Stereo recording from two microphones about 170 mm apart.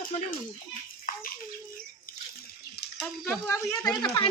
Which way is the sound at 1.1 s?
55° left (ahead or behind).